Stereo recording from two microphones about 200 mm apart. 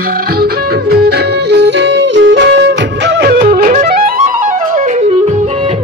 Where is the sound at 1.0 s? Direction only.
60° right (ahead or behind).